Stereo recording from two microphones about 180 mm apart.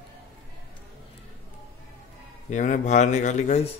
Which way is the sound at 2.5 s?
45° left (ahead or behind).